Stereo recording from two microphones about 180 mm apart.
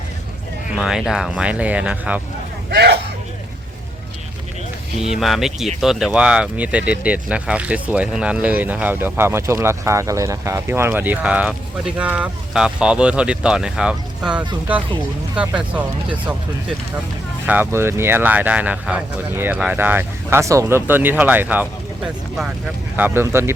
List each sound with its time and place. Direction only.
0.7 s speech: 5° right (ahead or behind)
2.6 s speech: 60° right (ahead or behind)
5.1 s speech: centre (ahead or behind)